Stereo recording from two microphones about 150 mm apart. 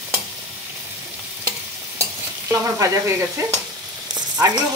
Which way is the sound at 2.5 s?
20° right (ahead or behind).